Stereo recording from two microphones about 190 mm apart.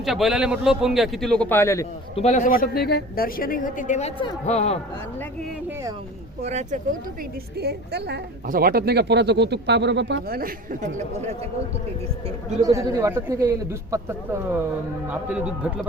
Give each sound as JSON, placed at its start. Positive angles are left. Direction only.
{"t": 0.0, "sound": "a man's voice", "side_deg": 0}
{"t": 2.1, "sound": "a woman's voice", "side_deg": 35}
{"t": 6.4, "sound": "speech", "side_deg": -35}
{"t": 7.5, "sound": "a woman's voice", "side_deg": -60}
{"t": 10.9, "sound": "speech", "side_deg": -35}
{"t": 12.6, "sound": "a man's voice", "side_deg": -20}